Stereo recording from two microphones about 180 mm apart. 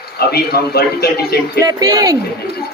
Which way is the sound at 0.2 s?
60° left (ahead or behind).